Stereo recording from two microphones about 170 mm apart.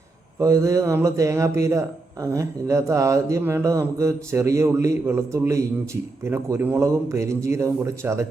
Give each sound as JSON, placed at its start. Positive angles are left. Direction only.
{"t": 0.3, "sound": "speech", "side_deg": -15}